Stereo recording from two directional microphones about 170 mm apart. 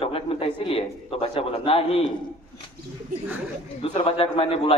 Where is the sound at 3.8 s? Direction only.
35° left (ahead or behind).